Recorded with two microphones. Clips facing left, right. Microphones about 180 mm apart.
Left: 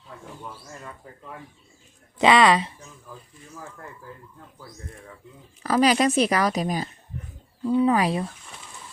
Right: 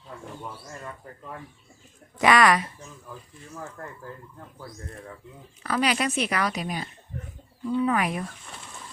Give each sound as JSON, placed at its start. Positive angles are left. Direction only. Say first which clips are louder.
{"t": 2.1, "sound": "a woman's voice", "louder": "left 2 dB", "side_deg": 25}
{"t": 5.6, "sound": "a woman's voice", "louder": "left 6 dB", "side_deg": 40}
{"t": 7.7, "sound": "a woman's voice", "louder": "left 4 dB", "side_deg": 30}